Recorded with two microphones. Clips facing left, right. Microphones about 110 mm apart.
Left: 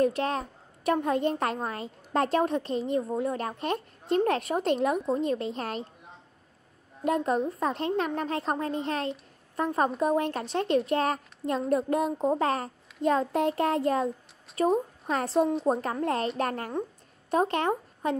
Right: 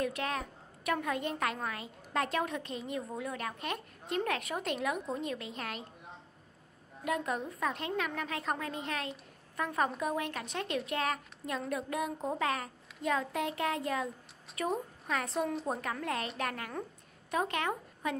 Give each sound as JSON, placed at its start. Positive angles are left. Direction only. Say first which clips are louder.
{"t": 0.0, "sound": "a child's voice", "louder": "left 8 dB", "side_deg": 30}
{"t": 7.1, "sound": "a child's voice", "louder": "left 8 dB", "side_deg": 35}